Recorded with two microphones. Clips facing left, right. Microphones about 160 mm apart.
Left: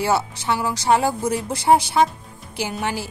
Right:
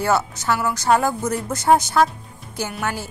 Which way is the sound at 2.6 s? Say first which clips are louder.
Left 1 dB; 25° left (ahead or behind).